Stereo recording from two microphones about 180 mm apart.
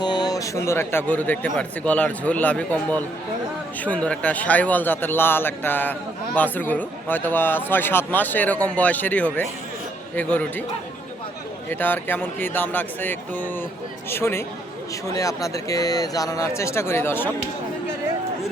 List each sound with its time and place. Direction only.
0.0 s a man's voice: 25° left (ahead or behind)
11.7 s a man's voice: 10° left (ahead or behind)